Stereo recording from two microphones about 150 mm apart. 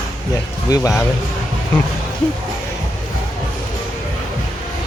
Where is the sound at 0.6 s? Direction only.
25° left (ahead or behind).